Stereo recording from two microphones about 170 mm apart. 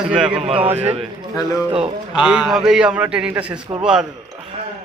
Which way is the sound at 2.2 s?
5° right (ahead or behind).